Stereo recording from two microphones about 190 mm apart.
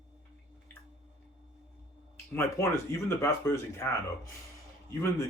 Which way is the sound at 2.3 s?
15° left (ahead or behind).